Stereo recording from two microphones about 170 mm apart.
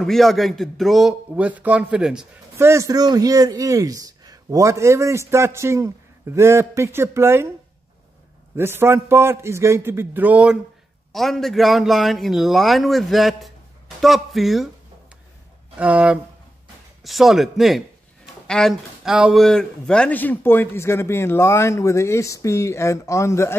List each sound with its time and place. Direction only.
0.0 s a man's voice: centre (ahead or behind)
2.5 s a man's voice: 15° right (ahead or behind)
8.5 s a man's voice: 15° right (ahead or behind)
15.8 s a man's voice: 5° right (ahead or behind); by 23.5 s 15° left (ahead or behind)